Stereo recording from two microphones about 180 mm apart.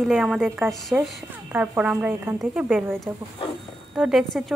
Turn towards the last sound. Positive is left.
turn(degrees=0)  # may be behind; listen again after turning